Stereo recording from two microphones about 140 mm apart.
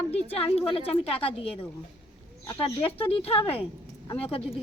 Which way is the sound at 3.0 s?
45° left (ahead or behind).